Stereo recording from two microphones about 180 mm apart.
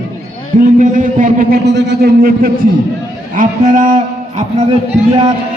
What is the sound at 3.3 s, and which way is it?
A man's voice, 45° right (ahead or behind).